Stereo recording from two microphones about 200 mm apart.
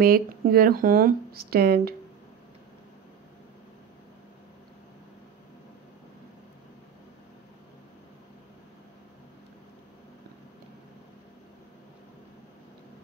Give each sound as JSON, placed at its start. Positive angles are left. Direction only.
{"t": 0.0, "sound": "speech", "side_deg": -50}